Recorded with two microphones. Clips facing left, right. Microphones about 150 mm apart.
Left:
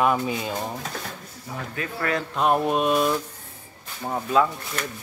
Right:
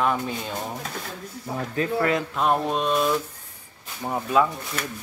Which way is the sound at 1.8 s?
20° right (ahead or behind).